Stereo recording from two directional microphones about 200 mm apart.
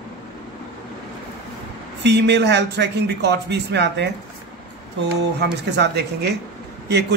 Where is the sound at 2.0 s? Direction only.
60° right (ahead or behind).